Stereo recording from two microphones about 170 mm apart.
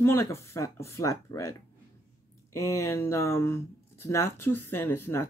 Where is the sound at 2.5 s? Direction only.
15° left (ahead or behind).